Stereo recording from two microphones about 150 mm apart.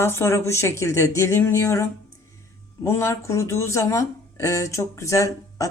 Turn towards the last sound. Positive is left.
turn(degrees=20)  # may be behind; listen again after turning